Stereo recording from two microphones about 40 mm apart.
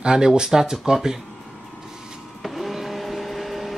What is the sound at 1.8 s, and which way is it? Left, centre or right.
Vehicle, centre.